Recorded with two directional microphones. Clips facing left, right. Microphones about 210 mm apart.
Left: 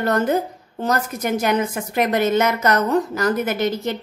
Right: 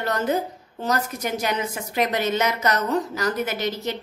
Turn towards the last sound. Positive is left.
turn(degrees=50)  # may be behind; listen again after turning